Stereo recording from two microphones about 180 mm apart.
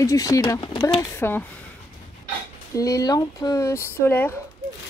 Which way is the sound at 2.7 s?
20° left (ahead or behind).